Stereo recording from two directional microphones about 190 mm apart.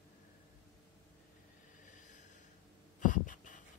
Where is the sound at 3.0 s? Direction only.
45° left (ahead or behind).